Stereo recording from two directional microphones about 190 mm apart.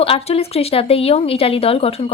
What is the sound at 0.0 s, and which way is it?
A woman's voice, 30° left (ahead or behind).